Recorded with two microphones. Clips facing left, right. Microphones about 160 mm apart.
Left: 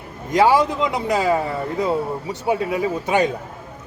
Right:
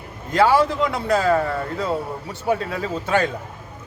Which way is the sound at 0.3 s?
15° left (ahead or behind).